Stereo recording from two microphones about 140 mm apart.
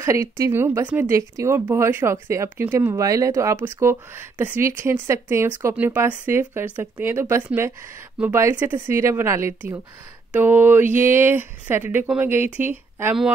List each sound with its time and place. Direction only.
0.0 s speech: 20° right (ahead or behind)